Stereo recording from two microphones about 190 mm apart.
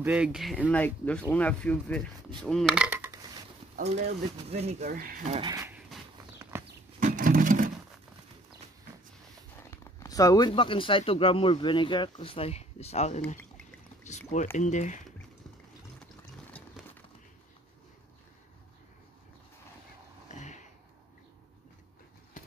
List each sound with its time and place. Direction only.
0.0 s speech: 5° right (ahead or behind)
4.5 s speech: 35° right (ahead or behind)
5.5 s speech: 15° right (ahead or behind)
7.0 s a sound: 45° right (ahead or behind)
9.7 s speech: 15° left (ahead or behind); by 15.0 s 40° left (ahead or behind)
20.2 s a sound: 40° left (ahead or behind)